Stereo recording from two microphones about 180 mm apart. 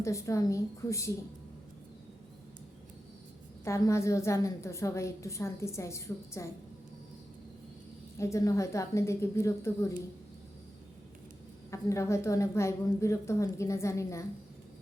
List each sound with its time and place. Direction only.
0.0 s a woman's voice: 15° left (ahead or behind)
3.6 s a woman's voice: 15° left (ahead or behind)
8.2 s a woman's voice: 15° left (ahead or behind)
11.7 s a woman's voice: 15° left (ahead or behind)